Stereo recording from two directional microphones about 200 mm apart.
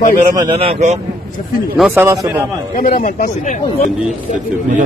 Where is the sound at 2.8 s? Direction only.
40° left (ahead or behind).